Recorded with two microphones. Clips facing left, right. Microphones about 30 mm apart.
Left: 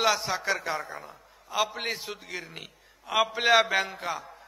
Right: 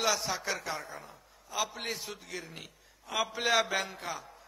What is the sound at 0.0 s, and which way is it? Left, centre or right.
A man's voice, left.